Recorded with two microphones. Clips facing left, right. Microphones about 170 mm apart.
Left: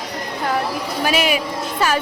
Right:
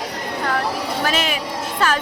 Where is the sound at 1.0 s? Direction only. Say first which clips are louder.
Left 6 dB; 10° left (ahead or behind).